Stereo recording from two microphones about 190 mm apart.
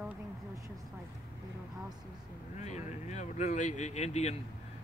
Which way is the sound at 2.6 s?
35° left (ahead or behind).